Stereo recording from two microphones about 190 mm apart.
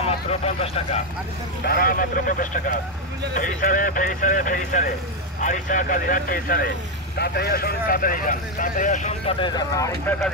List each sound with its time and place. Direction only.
0.3 s speech: 35° left (ahead or behind)
1.6 s speech: 50° left (ahead or behind)
9.4 s speech: 20° left (ahead or behind)